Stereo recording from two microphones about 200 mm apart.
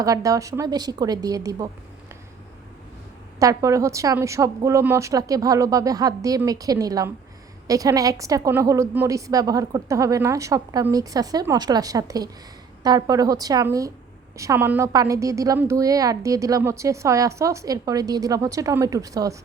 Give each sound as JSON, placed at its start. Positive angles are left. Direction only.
{"t": 0.0, "sound": "a woman's voice", "side_deg": -15}
{"t": 3.3, "sound": "a woman's voice", "side_deg": -15}